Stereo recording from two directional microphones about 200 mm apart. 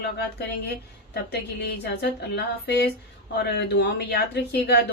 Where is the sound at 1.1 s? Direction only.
55° left (ahead or behind).